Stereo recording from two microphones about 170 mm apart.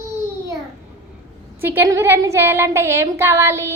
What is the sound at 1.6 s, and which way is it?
Speech, 10° right (ahead or behind).